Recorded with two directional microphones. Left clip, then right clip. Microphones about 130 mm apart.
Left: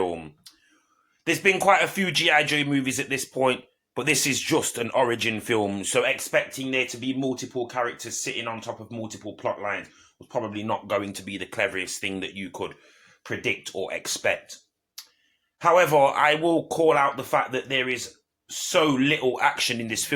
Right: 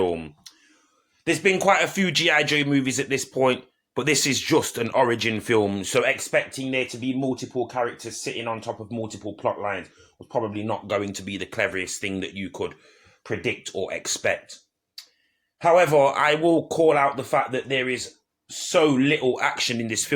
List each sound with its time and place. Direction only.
0.0 s a sound: 30° right (ahead or behind)
1.2 s speech: 35° right (ahead or behind)
15.5 s speech: 25° right (ahead or behind)